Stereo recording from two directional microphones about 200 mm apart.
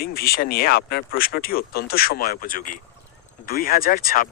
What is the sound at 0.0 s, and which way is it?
Speech, 50° left (ahead or behind).